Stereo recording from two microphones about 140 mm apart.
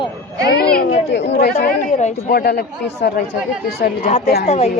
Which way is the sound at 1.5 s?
55° left (ahead or behind).